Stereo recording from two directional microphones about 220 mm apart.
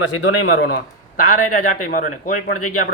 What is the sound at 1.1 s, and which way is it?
Speech, 40° left (ahead or behind).